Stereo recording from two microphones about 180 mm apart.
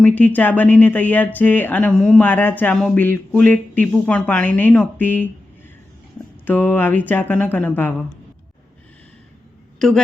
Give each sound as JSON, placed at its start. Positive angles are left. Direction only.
{"t": 0.0, "sound": "speech", "side_deg": 10}
{"t": 6.4, "sound": "speech", "side_deg": 10}
{"t": 9.7, "sound": "a woman's voice", "side_deg": 5}